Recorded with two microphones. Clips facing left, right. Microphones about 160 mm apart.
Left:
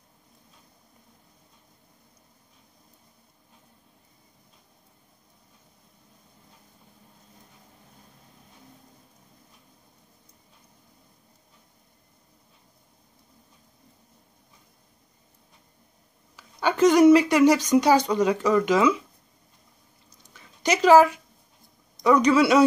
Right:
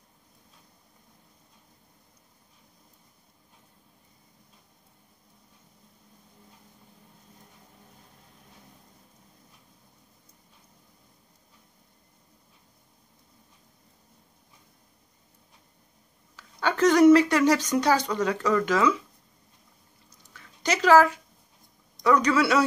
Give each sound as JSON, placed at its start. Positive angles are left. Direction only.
{"t": 16.3, "sound": "speech", "side_deg": 15}
{"t": 20.3, "sound": "a sound", "side_deg": 15}
{"t": 22.0, "sound": "speech", "side_deg": 15}